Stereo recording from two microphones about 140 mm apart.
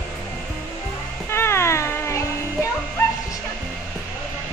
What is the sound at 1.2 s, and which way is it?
Cat, 20° left (ahead or behind).